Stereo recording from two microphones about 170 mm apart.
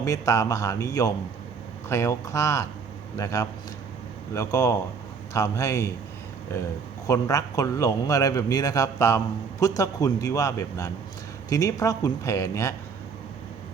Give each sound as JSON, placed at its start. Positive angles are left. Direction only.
{"t": 0.0, "sound": "a man's voice", "side_deg": 20}